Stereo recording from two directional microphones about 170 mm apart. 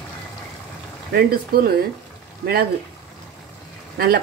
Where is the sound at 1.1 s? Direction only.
65° right (ahead or behind).